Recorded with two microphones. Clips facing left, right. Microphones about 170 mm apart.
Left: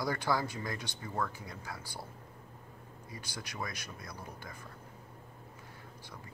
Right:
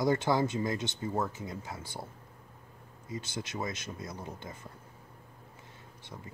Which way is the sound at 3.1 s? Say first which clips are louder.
Right 8 dB; 25° right (ahead or behind).